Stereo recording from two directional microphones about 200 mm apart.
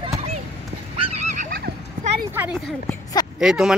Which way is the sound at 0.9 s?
30° right (ahead or behind).